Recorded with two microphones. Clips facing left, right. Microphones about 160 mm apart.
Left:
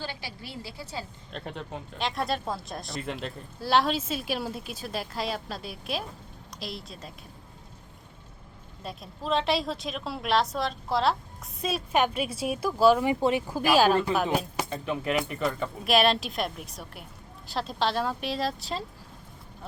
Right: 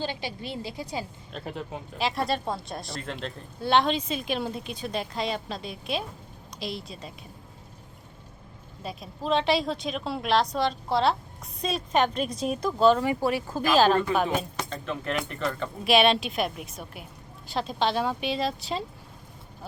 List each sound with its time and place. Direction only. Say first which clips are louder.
0.0 s a woman's voice: right 6 dB; 20° right (ahead or behind)
1.3 s speech: even; 5° right (ahead or behind)
8.8 s speech: right 3 dB; centre (ahead or behind)